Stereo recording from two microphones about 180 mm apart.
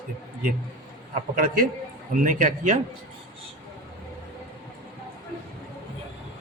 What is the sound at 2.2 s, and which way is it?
Speech, 45° right (ahead or behind).